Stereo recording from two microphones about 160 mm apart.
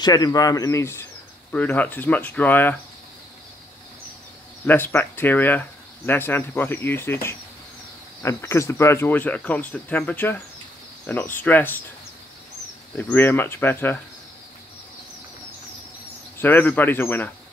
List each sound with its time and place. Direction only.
0.0 s speech: 25° left (ahead or behind)
4.6 s speech: 10° left (ahead or behind)
12.9 s speech: 15° left (ahead or behind)
16.3 s speech: 10° left (ahead or behind)